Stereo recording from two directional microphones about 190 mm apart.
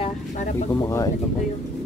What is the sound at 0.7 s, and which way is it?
Speech, 15° left (ahead or behind).